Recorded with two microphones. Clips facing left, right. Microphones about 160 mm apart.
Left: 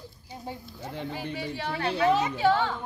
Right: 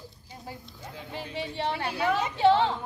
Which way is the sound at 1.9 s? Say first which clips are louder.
Left 6 dB; 25° left (ahead or behind).